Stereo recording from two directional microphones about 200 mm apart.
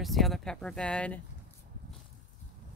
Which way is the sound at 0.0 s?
Centre (ahead or behind).